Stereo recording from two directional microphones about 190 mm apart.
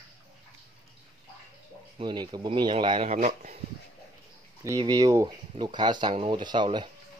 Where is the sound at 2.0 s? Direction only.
25° right (ahead or behind); by 3.5 s 40° right (ahead or behind).